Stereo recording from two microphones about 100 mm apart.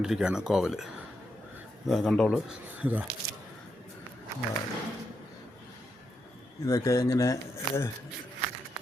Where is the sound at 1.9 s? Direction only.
5° left (ahead or behind).